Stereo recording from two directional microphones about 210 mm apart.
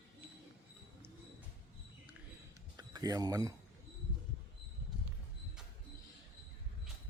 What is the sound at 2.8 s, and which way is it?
Speech, 20° right (ahead or behind).